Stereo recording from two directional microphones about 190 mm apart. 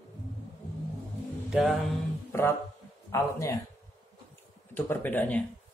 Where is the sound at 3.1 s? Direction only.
15° left (ahead or behind).